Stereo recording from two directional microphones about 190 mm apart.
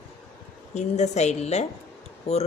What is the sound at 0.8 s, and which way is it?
A woman's voice, 35° left (ahead or behind).